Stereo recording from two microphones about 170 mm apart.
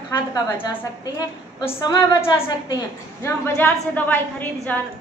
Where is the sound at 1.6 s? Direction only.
15° left (ahead or behind).